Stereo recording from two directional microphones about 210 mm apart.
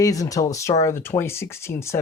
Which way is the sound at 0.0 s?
15° left (ahead or behind).